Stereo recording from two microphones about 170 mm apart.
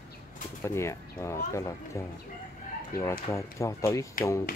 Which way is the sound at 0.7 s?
15° left (ahead or behind).